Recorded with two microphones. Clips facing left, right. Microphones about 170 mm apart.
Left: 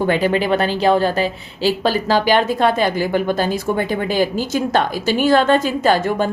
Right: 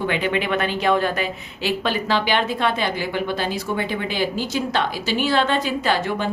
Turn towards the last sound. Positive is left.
turn(degrees=45)  # may be behind; listen again after turning